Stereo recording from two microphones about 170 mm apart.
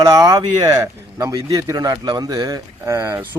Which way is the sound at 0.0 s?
20° right (ahead or behind).